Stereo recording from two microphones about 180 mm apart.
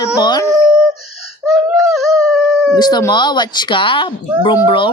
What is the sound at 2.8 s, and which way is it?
Speech, 20° left (ahead or behind).